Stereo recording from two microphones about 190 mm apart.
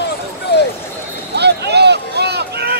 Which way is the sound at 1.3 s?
60° right (ahead or behind).